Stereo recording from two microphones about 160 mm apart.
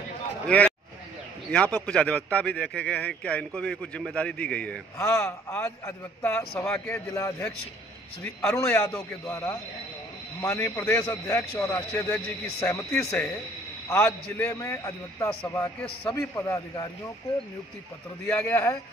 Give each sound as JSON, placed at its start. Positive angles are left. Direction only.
{"t": 0.5, "sound": "speech", "side_deg": 5}
{"t": 4.9, "sound": "speech", "side_deg": 20}
{"t": 6.6, "sound": "speech", "side_deg": 5}
{"t": 7.2, "sound": "a man's voice", "side_deg": 20}
{"t": 8.5, "sound": "a man's voice", "side_deg": 20}
{"t": 18.2, "sound": "speech", "side_deg": 10}